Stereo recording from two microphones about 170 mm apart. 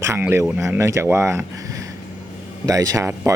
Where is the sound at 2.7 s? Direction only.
20° right (ahead or behind).